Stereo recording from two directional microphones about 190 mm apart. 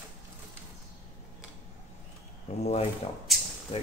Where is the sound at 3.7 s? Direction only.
30° left (ahead or behind).